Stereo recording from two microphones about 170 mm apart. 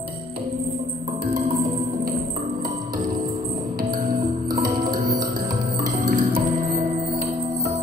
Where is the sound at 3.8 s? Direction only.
55° right (ahead or behind).